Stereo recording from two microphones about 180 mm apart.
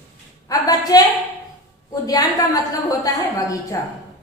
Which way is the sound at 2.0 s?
20° left (ahead or behind).